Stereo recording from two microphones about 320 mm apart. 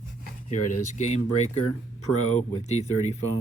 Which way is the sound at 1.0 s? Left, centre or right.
Left.